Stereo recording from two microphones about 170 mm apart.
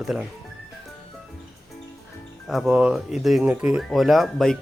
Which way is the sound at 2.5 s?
Centre (ahead or behind).